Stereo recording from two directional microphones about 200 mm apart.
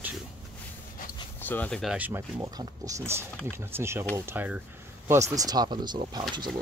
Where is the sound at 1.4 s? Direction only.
10° left (ahead or behind).